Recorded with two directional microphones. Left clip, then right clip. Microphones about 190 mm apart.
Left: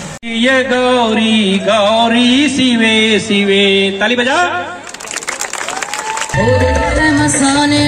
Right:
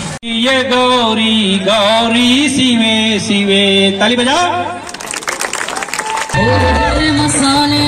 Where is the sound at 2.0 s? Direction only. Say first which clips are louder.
Even; 35° right (ahead or behind); by 4.4 s 60° right (ahead or behind).